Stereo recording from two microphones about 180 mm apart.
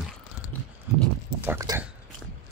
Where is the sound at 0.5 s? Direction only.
10° left (ahead or behind).